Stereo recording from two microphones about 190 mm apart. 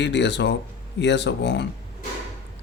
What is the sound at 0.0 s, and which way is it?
Speech, 65° left (ahead or behind).